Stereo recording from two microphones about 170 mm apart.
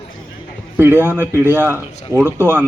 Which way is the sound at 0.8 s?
15° right (ahead or behind).